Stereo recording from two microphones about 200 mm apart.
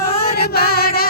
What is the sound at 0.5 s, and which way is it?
Music, 50° left (ahead or behind).